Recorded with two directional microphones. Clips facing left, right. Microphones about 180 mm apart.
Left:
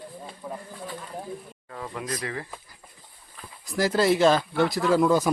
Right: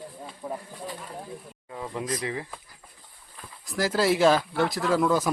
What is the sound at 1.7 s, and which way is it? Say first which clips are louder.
Speech: right 2 dB; 10° right (ahead or behind).